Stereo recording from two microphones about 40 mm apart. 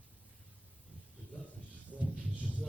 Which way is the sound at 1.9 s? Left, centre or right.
Left.